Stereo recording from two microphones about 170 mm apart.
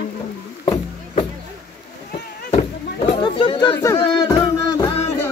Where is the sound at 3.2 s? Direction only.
30° left (ahead or behind).